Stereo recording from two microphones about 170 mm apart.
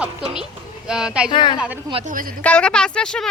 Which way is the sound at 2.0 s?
55° right (ahead or behind).